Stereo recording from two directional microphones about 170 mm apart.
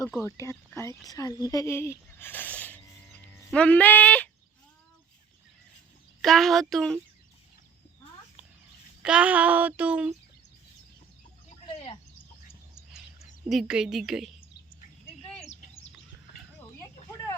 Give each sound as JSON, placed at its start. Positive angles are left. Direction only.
{"t": 0.2, "sound": "a woman's voice", "side_deg": 15}
{"t": 6.2, "sound": "a woman's voice", "side_deg": 0}
{"t": 9.0, "sound": "female singing", "side_deg": -5}
{"t": 11.6, "sound": "a sound", "side_deg": 35}
{"t": 13.5, "sound": "a woman's voice", "side_deg": 0}
{"t": 15.4, "sound": "bird", "side_deg": 40}